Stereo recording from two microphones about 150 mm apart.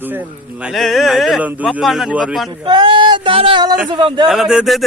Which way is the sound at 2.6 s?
35° right (ahead or behind).